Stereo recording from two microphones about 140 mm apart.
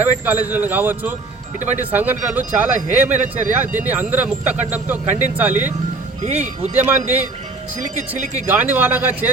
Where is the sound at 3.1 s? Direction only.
60° right (ahead or behind).